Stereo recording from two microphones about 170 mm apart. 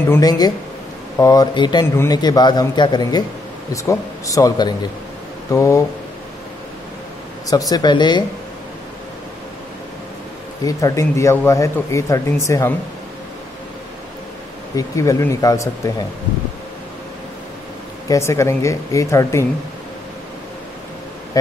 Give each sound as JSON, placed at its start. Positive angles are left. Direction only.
{"t": 0.1, "sound": "a man's voice", "side_deg": 20}
{"t": 7.7, "sound": "speech", "side_deg": 25}
{"t": 10.6, "sound": "a man's voice", "side_deg": 20}
{"t": 14.8, "sound": "speech", "side_deg": 20}
{"t": 18.0, "sound": "a man's voice", "side_deg": 20}